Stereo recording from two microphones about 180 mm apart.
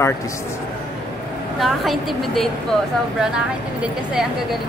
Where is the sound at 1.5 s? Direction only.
Centre (ahead or behind).